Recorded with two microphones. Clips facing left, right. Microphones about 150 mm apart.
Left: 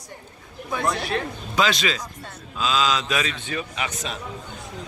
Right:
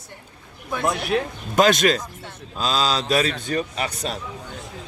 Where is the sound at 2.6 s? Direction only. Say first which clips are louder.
Even; 35° right (ahead or behind).